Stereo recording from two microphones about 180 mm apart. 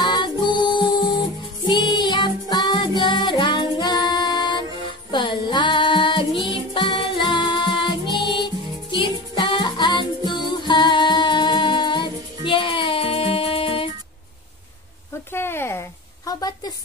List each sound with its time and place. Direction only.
0.0 s music: 25° left (ahead or behind)
9.3 s music: 25° left (ahead or behind)
15.3 s a sound: 15° left (ahead or behind)